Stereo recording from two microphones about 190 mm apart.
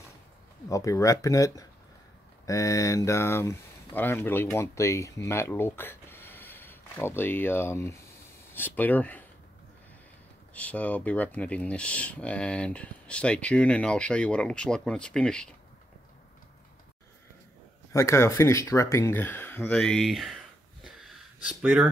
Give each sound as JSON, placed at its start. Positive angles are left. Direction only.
{"t": 0.7, "sound": "speech", "side_deg": 15}
{"t": 10.5, "sound": "speech", "side_deg": 5}
{"t": 17.9, "sound": "speech", "side_deg": 15}
{"t": 20.8, "sound": "a sound", "side_deg": -5}